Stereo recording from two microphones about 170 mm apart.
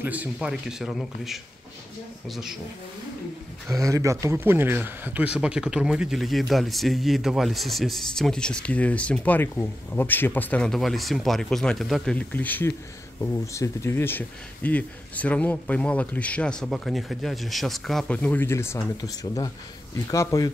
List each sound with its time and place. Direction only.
0.0 s speech: 10° right (ahead or behind)
3.6 s speech: 20° right (ahead or behind); by 20.5 s 20° left (ahead or behind)